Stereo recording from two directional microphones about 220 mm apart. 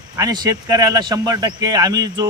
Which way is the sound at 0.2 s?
15° right (ahead or behind).